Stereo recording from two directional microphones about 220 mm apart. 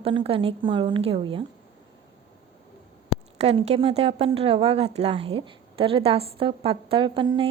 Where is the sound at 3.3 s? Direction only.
30° right (ahead or behind).